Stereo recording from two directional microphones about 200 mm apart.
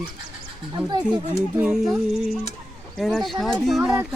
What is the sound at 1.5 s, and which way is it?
Speech, 5° right (ahead or behind).